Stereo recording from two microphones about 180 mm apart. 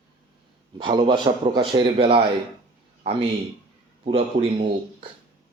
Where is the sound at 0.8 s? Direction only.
25° right (ahead or behind).